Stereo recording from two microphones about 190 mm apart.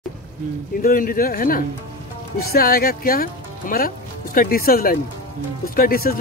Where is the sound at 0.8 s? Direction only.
45° left (ahead or behind).